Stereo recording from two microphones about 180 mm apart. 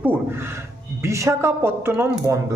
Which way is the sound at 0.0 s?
10° right (ahead or behind).